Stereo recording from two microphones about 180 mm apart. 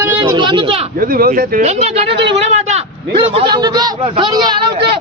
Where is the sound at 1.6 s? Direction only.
35° right (ahead or behind).